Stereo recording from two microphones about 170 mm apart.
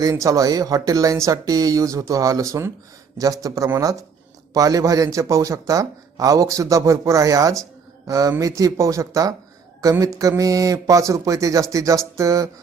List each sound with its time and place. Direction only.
0.0 s a man's voice: 20° right (ahead or behind)